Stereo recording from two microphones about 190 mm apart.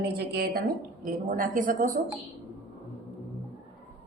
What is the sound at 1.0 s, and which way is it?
Speech, 45° right (ahead or behind).